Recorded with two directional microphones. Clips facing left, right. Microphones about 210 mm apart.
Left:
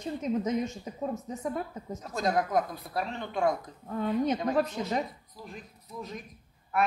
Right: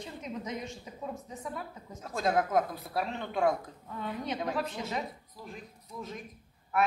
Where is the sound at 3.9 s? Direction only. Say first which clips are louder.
Left 8 dB; 45° left (ahead or behind).